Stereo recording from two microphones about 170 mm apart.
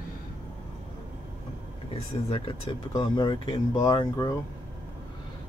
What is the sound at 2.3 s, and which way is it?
Speech, 30° left (ahead or behind).